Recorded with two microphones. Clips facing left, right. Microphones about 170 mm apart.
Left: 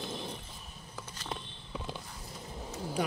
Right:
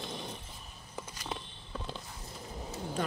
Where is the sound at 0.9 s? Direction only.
10° right (ahead or behind).